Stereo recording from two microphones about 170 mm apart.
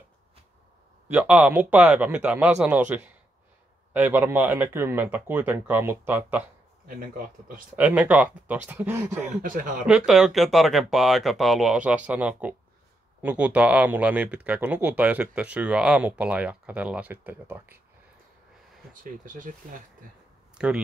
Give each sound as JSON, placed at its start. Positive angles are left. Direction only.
{"t": 1.0, "sound": "speech", "side_deg": -10}
{"t": 6.9, "sound": "a man's voice", "side_deg": -55}
{"t": 7.7, "sound": "speech", "side_deg": -10}
{"t": 9.4, "sound": "speech", "side_deg": -50}
{"t": 9.8, "sound": "speech", "side_deg": -5}
{"t": 19.2, "sound": "speech", "side_deg": -50}
{"t": 20.5, "sound": "speech", "side_deg": -5}